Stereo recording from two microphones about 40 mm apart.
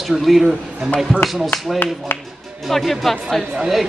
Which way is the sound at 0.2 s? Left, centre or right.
Centre.